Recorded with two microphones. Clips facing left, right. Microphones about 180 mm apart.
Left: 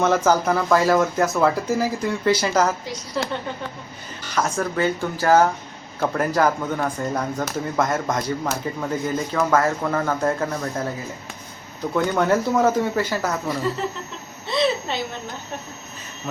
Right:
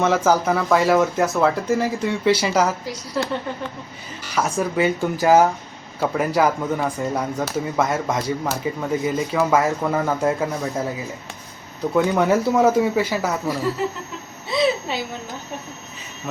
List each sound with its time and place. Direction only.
0.0 s speech: centre (ahead or behind)
4.3 s speech: 5° right (ahead or behind)
11.9 s a woman's voice: 10° right (ahead or behind)